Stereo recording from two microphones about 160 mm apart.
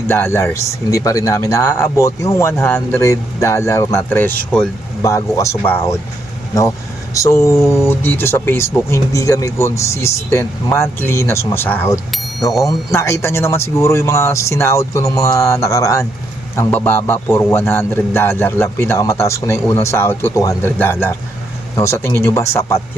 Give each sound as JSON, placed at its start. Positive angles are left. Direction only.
{"t": 0.1, "sound": "a man's voice", "side_deg": 15}